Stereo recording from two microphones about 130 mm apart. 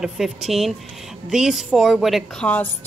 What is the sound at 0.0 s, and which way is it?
A woman's voice, centre (ahead or behind).